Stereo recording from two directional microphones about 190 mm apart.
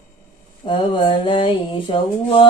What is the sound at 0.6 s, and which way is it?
Mantra, 25° left (ahead or behind).